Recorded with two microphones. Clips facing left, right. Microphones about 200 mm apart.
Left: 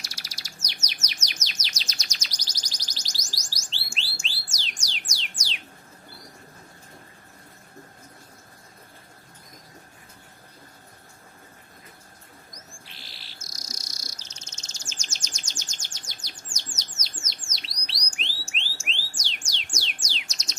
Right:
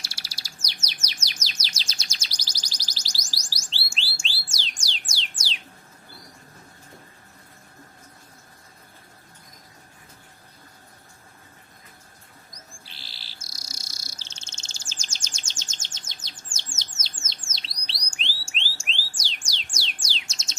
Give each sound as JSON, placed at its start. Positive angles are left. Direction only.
{"t": 0.0, "sound": "chirp", "side_deg": -30}
{"t": 3.6, "sound": "bird", "side_deg": -30}
{"t": 12.8, "sound": "bird", "side_deg": -30}